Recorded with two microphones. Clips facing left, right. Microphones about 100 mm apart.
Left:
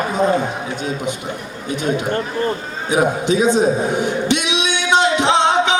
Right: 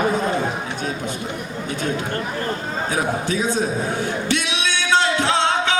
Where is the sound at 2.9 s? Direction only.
20° left (ahead or behind).